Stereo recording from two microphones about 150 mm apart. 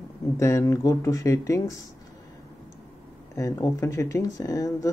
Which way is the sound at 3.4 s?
20° left (ahead or behind).